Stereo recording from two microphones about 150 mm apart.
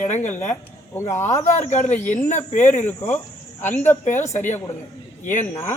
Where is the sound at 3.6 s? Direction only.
50° left (ahead or behind).